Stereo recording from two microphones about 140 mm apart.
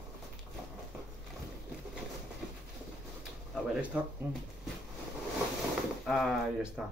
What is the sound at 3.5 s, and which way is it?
Speech, 5° right (ahead or behind).